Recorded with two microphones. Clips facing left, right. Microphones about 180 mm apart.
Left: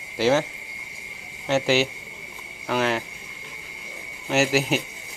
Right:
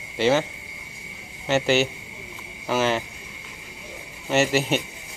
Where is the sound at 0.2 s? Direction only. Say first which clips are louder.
Even; centre (ahead or behind).